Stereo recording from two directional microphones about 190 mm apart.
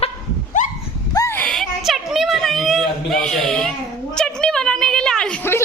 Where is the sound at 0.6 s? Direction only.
40° left (ahead or behind).